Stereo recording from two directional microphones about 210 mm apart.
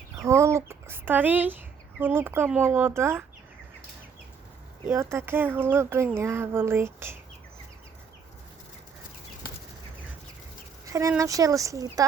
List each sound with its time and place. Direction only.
0.2 s speech: 15° right (ahead or behind)
4.9 s speech: 10° right (ahead or behind)
10.8 s a sound: 15° right (ahead or behind)
11.1 s speech: 15° right (ahead or behind)